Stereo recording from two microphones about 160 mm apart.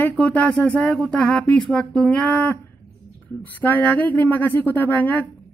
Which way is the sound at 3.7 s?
10° left (ahead or behind).